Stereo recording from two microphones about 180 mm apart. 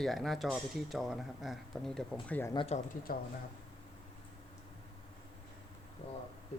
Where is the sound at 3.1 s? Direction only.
55° left (ahead or behind).